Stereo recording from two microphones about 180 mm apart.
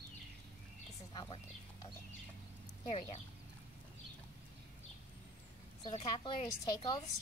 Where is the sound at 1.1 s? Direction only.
20° left (ahead or behind).